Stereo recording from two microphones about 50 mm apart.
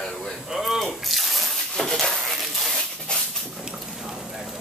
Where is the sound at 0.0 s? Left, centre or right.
Centre.